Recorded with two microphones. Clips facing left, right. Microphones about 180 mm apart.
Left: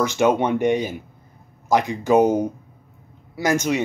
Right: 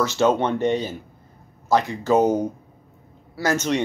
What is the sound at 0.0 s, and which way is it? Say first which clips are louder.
Speech: left 1 dB; 15° left (ahead or behind).